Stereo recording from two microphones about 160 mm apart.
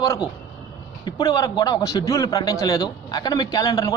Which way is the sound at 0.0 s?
25° left (ahead or behind).